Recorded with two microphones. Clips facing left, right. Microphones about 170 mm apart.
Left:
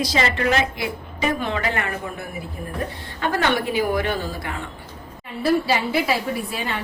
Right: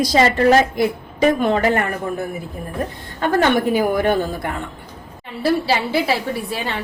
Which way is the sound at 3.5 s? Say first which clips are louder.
Right 5 dB; 50° right (ahead or behind).